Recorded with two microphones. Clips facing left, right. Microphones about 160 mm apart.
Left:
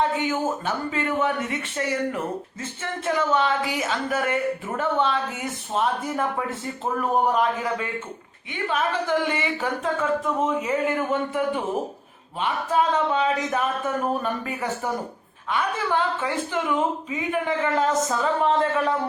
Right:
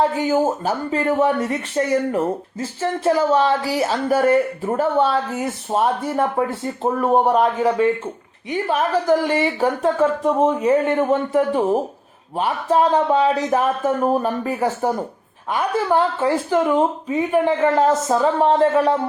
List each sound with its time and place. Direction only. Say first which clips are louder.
0.2 s speech: right 7 dB; 35° right (ahead or behind)